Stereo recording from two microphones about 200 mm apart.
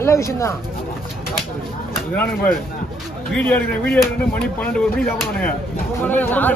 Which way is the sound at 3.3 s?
5° left (ahead or behind).